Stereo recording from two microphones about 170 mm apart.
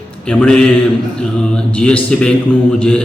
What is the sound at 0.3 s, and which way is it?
A man's voice, 5° left (ahead or behind).